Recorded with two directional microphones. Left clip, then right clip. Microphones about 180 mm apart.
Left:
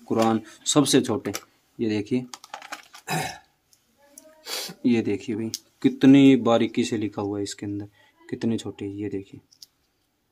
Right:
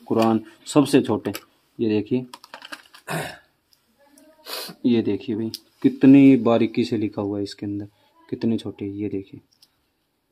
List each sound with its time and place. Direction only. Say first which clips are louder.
0.0 s speech: right 2 dB; 10° right (ahead or behind)
2.3 s typing: left 1 dB; 5° left (ahead or behind)
3.1 s burping: left 1 dB; 30° left (ahead or behind)
4.8 s speech: right 3 dB; 5° right (ahead or behind)